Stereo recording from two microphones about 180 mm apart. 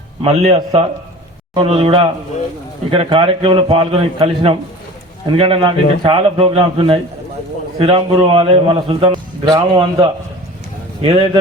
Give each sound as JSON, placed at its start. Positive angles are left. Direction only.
{"t": 0.3, "sound": "a man's voice", "side_deg": -35}